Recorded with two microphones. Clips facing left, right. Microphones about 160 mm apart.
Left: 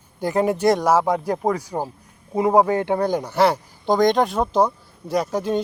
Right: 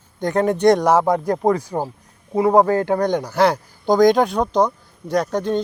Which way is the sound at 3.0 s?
5° left (ahead or behind).